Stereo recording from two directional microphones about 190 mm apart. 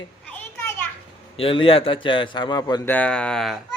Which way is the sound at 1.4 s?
30° left (ahead or behind).